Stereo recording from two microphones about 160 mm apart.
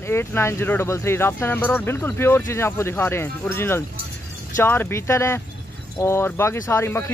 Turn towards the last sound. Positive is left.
turn(degrees=15)  # may be behind; listen again after turning